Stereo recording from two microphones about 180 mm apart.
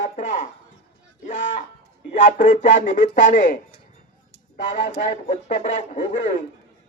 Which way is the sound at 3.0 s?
90° left.